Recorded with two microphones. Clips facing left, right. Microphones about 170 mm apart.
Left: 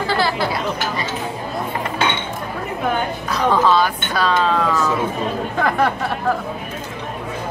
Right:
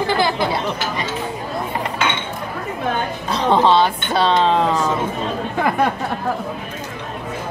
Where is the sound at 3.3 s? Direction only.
25° right (ahead or behind).